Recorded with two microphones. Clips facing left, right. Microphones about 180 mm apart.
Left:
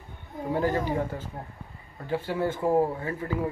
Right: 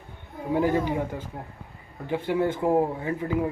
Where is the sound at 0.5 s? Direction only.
15° right (ahead or behind).